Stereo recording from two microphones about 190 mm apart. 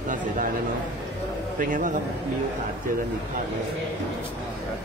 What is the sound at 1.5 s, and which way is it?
Speech, 45° right (ahead or behind).